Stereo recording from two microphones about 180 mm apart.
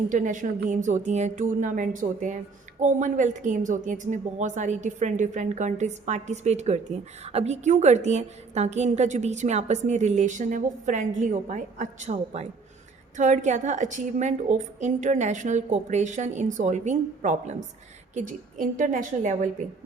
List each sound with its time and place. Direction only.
0.1 s a woman's voice: 45° right (ahead or behind)